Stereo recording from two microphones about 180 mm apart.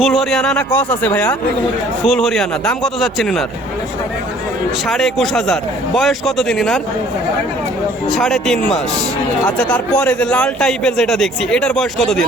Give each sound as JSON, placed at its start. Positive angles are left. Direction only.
{"t": 0.0, "sound": "a man's voice", "side_deg": 0}
{"t": 4.9, "sound": "a man's voice", "side_deg": 0}
{"t": 8.1, "sound": "a man's voice", "side_deg": 0}